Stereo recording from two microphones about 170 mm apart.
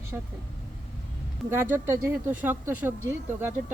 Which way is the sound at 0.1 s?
10° right (ahead or behind).